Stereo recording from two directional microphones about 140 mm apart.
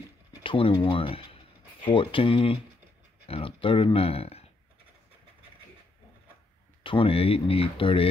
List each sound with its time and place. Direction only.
0.4 s speech: 40° left (ahead or behind)
6.8 s speech: 40° left (ahead or behind)